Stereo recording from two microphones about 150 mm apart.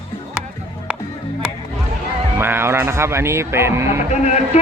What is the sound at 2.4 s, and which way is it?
Music, 15° right (ahead or behind).